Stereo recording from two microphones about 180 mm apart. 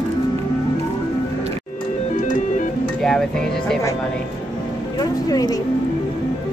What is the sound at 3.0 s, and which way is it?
Speech, 5° left (ahead or behind).